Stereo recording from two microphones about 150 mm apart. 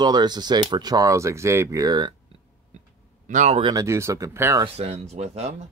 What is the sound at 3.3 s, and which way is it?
Speech, 55° right (ahead or behind).